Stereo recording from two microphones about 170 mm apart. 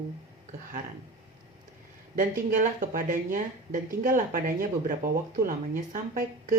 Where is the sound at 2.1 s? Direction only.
50° right (ahead or behind).